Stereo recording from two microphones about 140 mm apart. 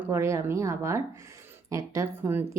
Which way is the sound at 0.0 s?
20° right (ahead or behind).